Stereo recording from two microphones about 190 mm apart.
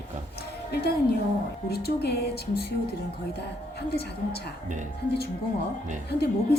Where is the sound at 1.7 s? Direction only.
55° left (ahead or behind).